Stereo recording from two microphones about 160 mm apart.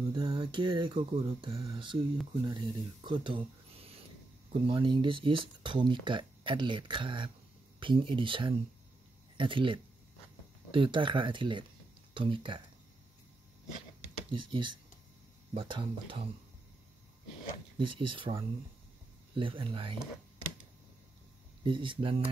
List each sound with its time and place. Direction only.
0.1 s speech: 30° right (ahead or behind)
14.3 s speech: 30° right (ahead or behind)
17.7 s speech: 30° right (ahead or behind)
21.6 s speech: 30° right (ahead or behind)